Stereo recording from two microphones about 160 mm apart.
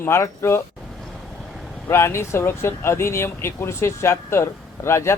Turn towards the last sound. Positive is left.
turn(degrees=15)  # may be behind; listen again after turning